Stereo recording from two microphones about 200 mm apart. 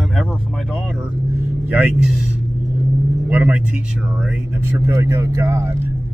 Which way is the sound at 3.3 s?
10° right (ahead or behind).